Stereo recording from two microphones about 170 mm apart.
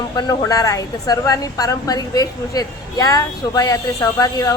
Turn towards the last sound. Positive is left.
turn(degrees=20)  # may be behind; listen again after turning